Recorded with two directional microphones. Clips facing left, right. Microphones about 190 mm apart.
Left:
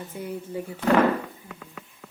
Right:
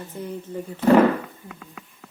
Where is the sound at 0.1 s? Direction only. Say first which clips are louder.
Right 1 dB; 10° left (ahead or behind).